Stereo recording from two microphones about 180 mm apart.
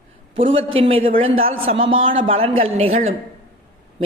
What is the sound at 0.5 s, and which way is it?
A man's voice, 30° right (ahead or behind).